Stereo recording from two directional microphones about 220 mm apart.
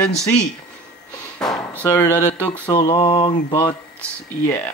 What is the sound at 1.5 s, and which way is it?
Speech, 5° left (ahead or behind).